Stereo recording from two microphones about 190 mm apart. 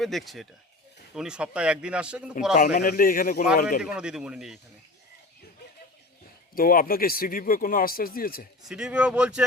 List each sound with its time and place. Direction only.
0.0 s speech: centre (ahead or behind)
2.7 s speech: 50° left (ahead or behind)
3.8 s speech: 5° right (ahead or behind)
6.6 s speech: 50° left (ahead or behind)
8.6 s speech: 5° right (ahead or behind)